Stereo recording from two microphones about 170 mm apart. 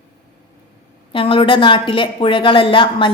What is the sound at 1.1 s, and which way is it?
Speech, 30° left (ahead or behind).